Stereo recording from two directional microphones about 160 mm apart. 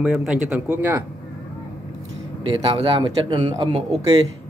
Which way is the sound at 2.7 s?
30° right (ahead or behind).